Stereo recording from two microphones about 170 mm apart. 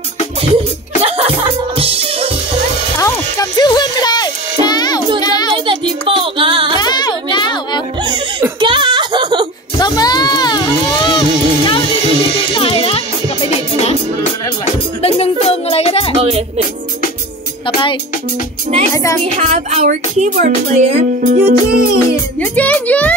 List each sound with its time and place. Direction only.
1.0 s music: 35° right (ahead or behind)
3.0 s music: 20° left (ahead or behind)
5.2 s child singing: 25° left (ahead or behind)
5.7 s music: 30° right (ahead or behind)
6.8 s a sound: 25° left (ahead or behind)
8.5 s a sound: 30° right (ahead or behind)
9.8 s music: 25° left (ahead or behind)
15.0 s music: 35° left (ahead or behind)
16.2 s music: 35° right (ahead or behind)
19.2 s speech: 45° right (ahead or behind); by 21.9 s 60° right (ahead or behind)
22.4 s a child's voice: 10° left (ahead or behind)